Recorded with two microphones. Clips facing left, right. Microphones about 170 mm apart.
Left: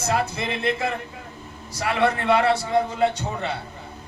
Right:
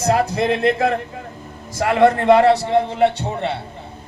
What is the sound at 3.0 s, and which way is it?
Speech, 25° right (ahead or behind).